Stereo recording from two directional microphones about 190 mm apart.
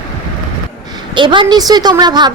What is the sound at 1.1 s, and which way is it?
A woman's voice, 25° right (ahead or behind).